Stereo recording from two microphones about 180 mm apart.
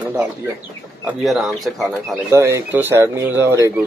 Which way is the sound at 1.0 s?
Centre (ahead or behind).